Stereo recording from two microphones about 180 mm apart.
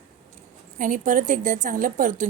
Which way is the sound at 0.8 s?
45° right (ahead or behind).